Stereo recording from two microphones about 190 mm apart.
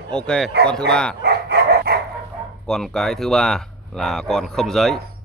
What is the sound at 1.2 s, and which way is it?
Dog, 55° right (ahead or behind).